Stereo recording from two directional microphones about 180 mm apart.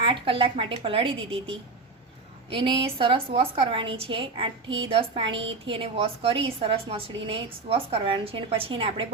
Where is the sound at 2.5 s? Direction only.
30° right (ahead or behind).